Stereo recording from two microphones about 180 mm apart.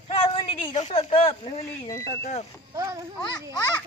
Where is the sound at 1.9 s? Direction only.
20° left (ahead or behind).